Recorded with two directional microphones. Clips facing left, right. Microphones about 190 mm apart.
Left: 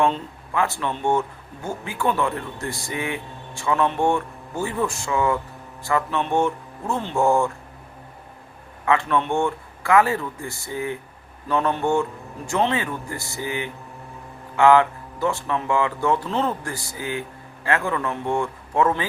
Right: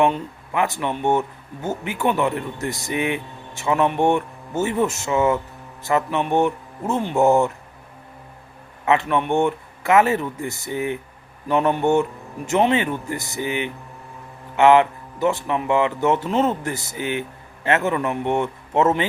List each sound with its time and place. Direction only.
0.0 s speech: 20° right (ahead or behind)
8.8 s speech: 20° right (ahead or behind)